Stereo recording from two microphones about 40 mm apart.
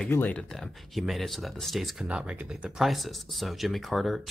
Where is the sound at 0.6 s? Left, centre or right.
Centre.